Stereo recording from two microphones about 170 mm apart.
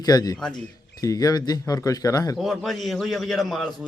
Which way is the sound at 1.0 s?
20° left (ahead or behind).